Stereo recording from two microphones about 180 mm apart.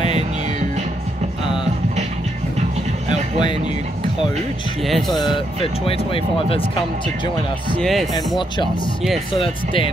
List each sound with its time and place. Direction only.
1.4 s music: 25° left (ahead or behind)
3.1 s music: 25° left (ahead or behind)
4.8 s speech: centre (ahead or behind)
5.1 s speech: 25° left (ahead or behind)
7.7 s speech: centre (ahead or behind)